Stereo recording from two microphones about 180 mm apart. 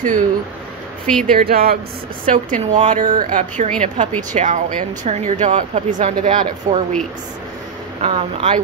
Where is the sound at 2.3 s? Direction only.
45° right (ahead or behind).